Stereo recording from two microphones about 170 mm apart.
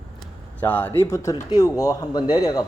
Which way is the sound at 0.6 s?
10° left (ahead or behind).